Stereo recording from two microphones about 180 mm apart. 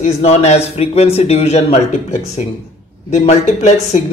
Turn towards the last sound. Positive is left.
turn(degrees=40)  # may be behind; listen again after turning